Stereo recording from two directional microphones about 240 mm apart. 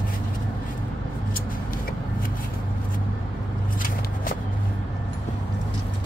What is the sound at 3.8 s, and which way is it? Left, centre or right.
Walk, left.